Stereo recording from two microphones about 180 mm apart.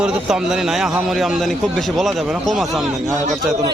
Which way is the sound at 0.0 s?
5° right (ahead or behind).